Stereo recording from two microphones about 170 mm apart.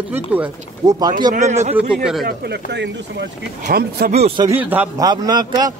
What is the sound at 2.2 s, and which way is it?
Speech, 80° right.